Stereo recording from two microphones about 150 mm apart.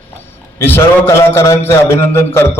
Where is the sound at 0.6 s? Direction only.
15° left (ahead or behind).